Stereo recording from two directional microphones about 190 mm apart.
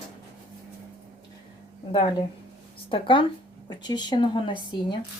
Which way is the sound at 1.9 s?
25° left (ahead or behind).